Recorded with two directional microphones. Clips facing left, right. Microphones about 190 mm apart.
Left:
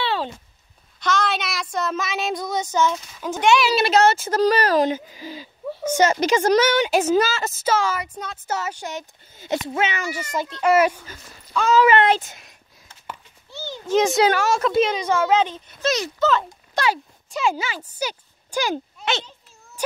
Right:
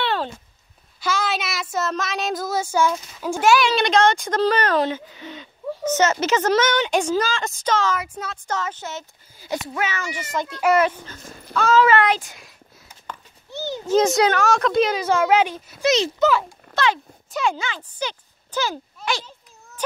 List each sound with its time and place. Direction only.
0.0 s a sound: 5° left (ahead or behind)
1.0 s speech: 5° right (ahead or behind)
8.0 s speech: 5° right (ahead or behind)
8.5 s speech: 10° left (ahead or behind)
10.7 s speech: 10° left (ahead or behind)
13.5 s a sound: 15° right (ahead or behind)
14.0 s speech: 5° left (ahead or behind)
15.9 s speech: 25° right (ahead or behind)
16.7 s speech: 10° left (ahead or behind)